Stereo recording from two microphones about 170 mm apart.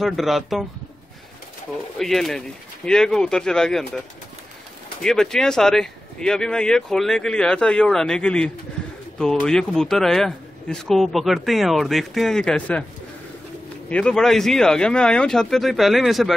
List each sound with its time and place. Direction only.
0.0 s speech: centre (ahead or behind)
2.0 s speech: centre (ahead or behind)
5.0 s speech: 5° left (ahead or behind)
13.8 s speech: 5° left (ahead or behind)